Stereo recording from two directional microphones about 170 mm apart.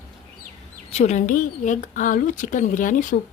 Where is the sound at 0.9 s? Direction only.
40° left (ahead or behind).